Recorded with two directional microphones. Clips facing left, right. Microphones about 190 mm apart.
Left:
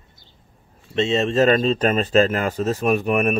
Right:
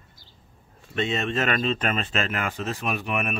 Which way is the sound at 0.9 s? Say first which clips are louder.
Left 7 dB; 30° left (ahead or behind).